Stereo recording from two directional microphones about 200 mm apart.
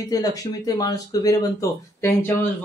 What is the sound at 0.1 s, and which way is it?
Speech, 15° left (ahead or behind).